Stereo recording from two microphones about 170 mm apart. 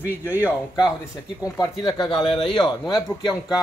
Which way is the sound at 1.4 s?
20° left (ahead or behind).